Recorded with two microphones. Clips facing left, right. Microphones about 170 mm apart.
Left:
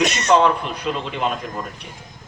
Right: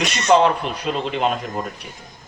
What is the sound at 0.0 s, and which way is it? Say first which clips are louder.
Speech: left 4 dB; 45° left (ahead or behind).